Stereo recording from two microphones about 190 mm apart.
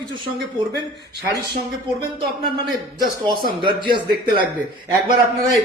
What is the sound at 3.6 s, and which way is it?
Speech, 25° right (ahead or behind).